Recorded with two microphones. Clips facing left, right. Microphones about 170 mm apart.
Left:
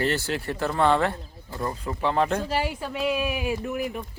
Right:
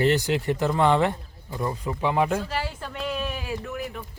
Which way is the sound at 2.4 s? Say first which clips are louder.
Left 4 dB; 15° left (ahead or behind).